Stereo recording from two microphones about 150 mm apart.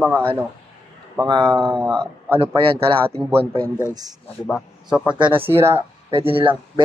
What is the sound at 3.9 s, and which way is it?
Speech, 25° right (ahead or behind).